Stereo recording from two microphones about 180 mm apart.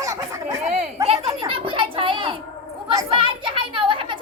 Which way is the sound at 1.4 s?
30° right (ahead or behind).